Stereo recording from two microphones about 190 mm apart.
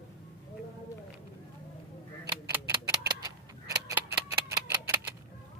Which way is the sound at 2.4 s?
15° right (ahead or behind).